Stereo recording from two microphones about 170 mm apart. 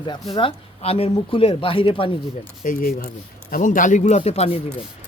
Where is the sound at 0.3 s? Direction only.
35° left (ahead or behind).